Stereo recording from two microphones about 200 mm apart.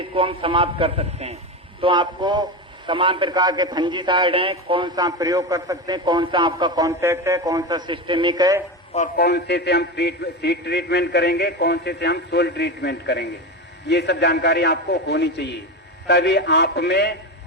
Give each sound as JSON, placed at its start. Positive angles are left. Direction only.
{"t": 0.1, "sound": "a man's voice", "side_deg": -25}
{"t": 9.1, "sound": "a man's voice", "side_deg": 55}